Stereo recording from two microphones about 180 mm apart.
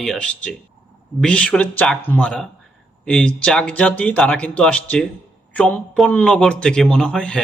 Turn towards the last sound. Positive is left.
turn(degrees=5)  # may be behind; listen again after turning